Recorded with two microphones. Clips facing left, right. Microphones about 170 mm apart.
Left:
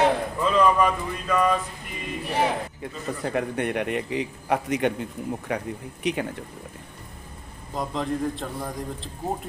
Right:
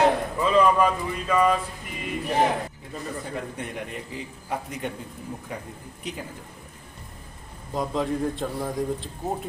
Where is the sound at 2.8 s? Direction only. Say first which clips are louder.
Left 4 dB; 70° left (ahead or behind).